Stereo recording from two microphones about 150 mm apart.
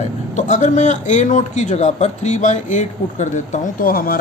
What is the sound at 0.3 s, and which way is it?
A man's voice, 55° left (ahead or behind).